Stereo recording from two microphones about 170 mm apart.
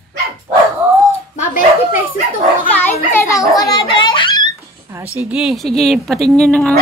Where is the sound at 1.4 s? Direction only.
55° left (ahead or behind).